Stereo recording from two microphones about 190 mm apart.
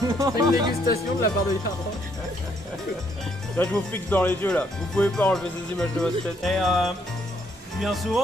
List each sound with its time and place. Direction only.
0.0 s speech: 20° right (ahead or behind)
0.8 s speech: 55° left (ahead or behind)
3.5 s speech: 5° left (ahead or behind)